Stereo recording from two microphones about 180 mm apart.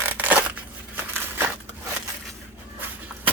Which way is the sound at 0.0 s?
10° right (ahead or behind).